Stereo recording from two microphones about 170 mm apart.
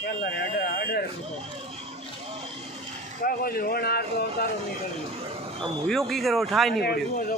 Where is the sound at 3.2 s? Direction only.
60° left (ahead or behind).